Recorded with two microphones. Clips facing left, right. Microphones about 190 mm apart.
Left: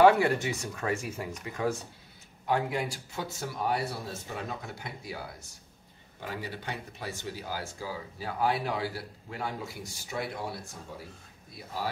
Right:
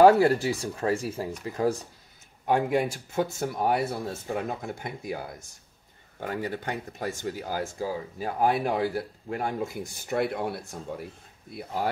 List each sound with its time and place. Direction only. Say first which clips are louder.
0.0 s speech: right 4 dB; 35° right (ahead or behind)
2.4 s speech: right 5 dB; 50° right (ahead or behind)